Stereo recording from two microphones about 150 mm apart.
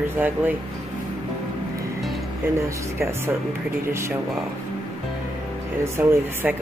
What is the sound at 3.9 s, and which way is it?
Speech, 15° right (ahead or behind).